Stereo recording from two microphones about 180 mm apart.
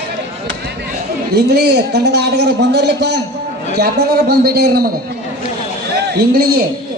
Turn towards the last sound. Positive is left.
turn(degrees=-60)  # may be behind; listen again after turning